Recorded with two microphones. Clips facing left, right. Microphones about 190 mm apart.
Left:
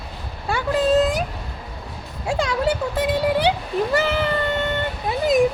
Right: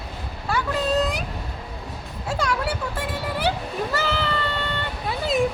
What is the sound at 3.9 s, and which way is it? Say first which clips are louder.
Cat: left 5 dB; 20° left (ahead or behind).